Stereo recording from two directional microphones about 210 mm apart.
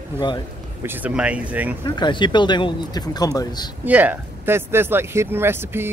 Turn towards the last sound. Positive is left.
turn(degrees=-10)  # may be behind; listen again after turning